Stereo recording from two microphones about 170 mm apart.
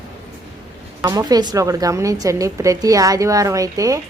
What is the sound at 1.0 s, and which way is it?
A woman's voice, 20° right (ahead or behind).